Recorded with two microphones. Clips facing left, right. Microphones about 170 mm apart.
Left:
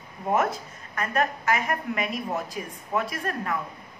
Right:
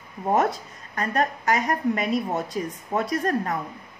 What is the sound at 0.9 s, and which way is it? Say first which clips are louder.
A woman's voice: right 2 dB; 35° right (ahead or behind).